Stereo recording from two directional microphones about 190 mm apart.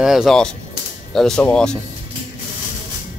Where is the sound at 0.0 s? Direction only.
Centre (ahead or behind).